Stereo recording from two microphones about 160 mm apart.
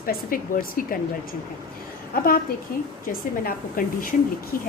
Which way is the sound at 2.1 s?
65° left (ahead or behind).